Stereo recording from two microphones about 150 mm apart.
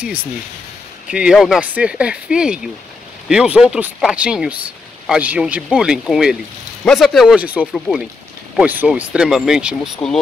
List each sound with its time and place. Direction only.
0.0 s speech: 10° right (ahead or behind)